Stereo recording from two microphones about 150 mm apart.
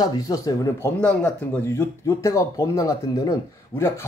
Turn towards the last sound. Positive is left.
turn(degrees=15)  # may be behind; listen again after turning